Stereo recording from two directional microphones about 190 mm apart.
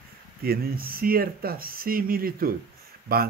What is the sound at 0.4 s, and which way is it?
Speech, 50° right (ahead or behind).